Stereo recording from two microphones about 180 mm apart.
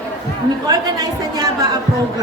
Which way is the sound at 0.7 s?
20° right (ahead or behind).